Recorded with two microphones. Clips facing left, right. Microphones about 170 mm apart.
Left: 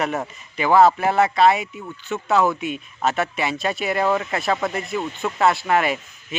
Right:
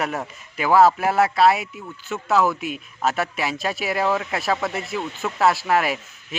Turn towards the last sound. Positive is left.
turn(degrees=0)  # may be behind; listen again after turning